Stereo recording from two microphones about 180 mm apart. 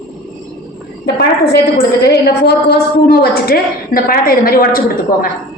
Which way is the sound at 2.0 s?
65° left (ahead or behind).